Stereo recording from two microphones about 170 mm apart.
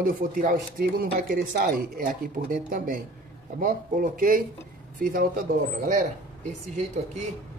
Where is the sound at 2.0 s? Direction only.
55° right (ahead or behind).